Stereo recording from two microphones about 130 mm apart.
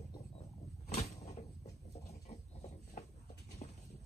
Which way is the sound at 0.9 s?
55° left (ahead or behind).